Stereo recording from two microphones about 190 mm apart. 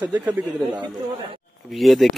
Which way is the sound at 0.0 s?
10° right (ahead or behind).